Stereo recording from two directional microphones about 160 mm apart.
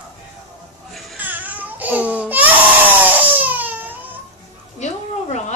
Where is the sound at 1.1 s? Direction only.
10° right (ahead or behind).